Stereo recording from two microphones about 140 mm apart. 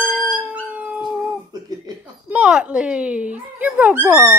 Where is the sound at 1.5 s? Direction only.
30° right (ahead or behind).